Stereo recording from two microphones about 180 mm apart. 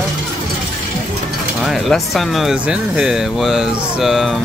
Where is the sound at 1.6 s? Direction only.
Centre (ahead or behind).